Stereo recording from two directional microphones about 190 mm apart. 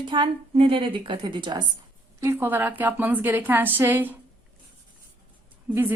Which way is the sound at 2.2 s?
10° right (ahead or behind).